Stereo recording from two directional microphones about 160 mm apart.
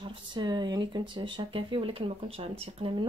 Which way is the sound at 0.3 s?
25° right (ahead or behind).